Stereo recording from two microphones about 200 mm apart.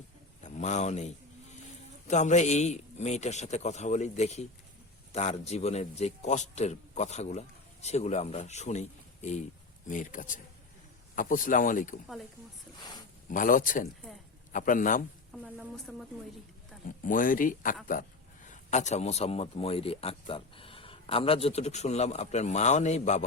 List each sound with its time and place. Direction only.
0.4 s speech: 35° left (ahead or behind)
13.3 s speech: 40° left (ahead or behind)
15.3 s speech: centre (ahead or behind)
17.1 s speech: 45° left (ahead or behind)